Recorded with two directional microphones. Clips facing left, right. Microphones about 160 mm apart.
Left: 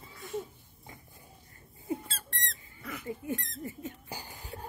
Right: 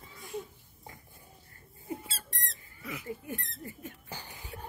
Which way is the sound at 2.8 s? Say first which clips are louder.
Right 1 dB; 5° right (ahead or behind).